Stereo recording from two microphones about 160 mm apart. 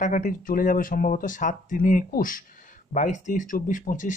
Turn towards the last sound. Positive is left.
turn(degrees=55)  # may be behind; listen again after turning